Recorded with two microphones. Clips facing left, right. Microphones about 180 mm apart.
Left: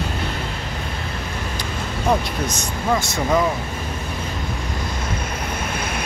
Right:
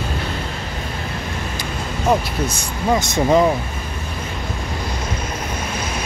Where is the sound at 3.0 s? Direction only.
20° right (ahead or behind).